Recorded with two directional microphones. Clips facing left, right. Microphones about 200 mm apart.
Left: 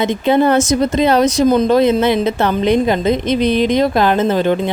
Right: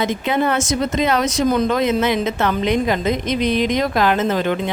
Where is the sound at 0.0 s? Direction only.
30° left (ahead or behind).